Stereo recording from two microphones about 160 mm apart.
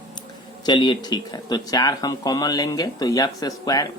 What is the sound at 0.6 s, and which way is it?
Speech, 30° left (ahead or behind).